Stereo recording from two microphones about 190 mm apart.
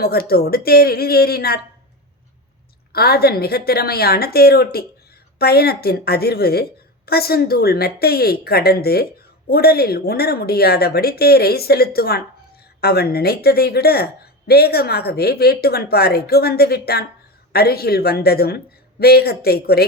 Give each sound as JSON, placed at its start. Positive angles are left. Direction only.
{"t": 0.0, "sound": "speech", "side_deg": 55}
{"t": 2.9, "sound": "speech", "side_deg": 55}